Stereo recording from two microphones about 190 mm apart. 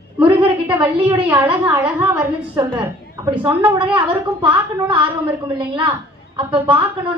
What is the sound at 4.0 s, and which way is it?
Speech, 25° right (ahead or behind).